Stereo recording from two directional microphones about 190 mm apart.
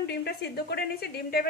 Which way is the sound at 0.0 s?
60° left (ahead or behind).